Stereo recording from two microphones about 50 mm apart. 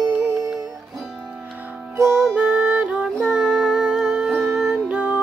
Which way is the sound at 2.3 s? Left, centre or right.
Right.